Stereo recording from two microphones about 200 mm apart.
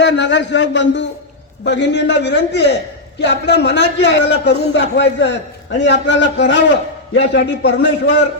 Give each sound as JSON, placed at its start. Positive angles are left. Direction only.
{"t": 0.0, "sound": "a man's voice", "side_deg": 60}